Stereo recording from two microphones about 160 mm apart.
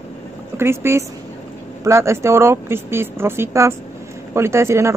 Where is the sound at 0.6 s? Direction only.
15° right (ahead or behind).